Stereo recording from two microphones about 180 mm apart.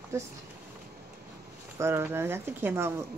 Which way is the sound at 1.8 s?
15° right (ahead or behind).